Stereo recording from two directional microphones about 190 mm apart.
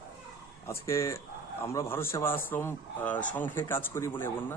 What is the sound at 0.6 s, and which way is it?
Speech, 15° left (ahead or behind).